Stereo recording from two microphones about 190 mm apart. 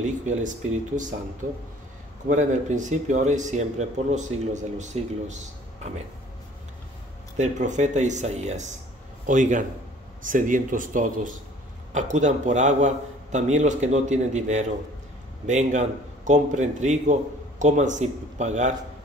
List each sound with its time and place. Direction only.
0.0 s a man's voice: 40° right (ahead or behind)
2.2 s a man's voice: 40° right (ahead or behind)
7.3 s a man's voice: 40° right (ahead or behind)